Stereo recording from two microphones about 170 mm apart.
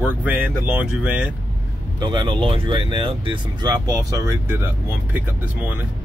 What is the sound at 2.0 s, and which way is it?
Speech, 25° right (ahead or behind).